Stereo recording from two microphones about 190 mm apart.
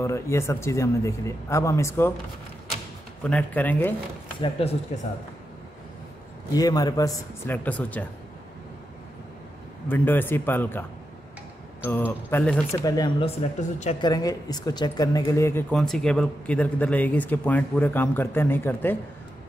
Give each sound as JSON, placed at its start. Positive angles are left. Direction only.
{"t": 0.0, "sound": "speech", "side_deg": 15}
{"t": 3.3, "sound": "speech", "side_deg": 5}
{"t": 4.4, "sound": "speech", "side_deg": 30}
{"t": 6.5, "sound": "speech", "side_deg": 20}
{"t": 9.8, "sound": "speech", "side_deg": 10}
{"t": 12.8, "sound": "speech", "side_deg": 20}
{"t": 13.2, "sound": "speech", "side_deg": 35}
{"t": 13.9, "sound": "speech", "side_deg": 20}
{"t": 15.7, "sound": "speech", "side_deg": 5}